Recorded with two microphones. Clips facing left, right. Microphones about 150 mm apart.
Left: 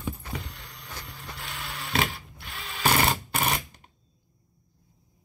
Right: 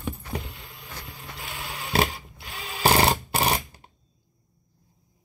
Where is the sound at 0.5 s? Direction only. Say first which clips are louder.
Right 1 dB; centre (ahead or behind).